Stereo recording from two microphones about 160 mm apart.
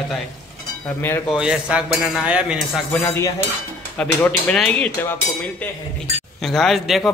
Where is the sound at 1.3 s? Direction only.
5° right (ahead or behind).